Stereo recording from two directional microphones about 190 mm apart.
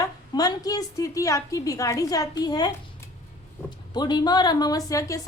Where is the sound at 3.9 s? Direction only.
20° left (ahead or behind).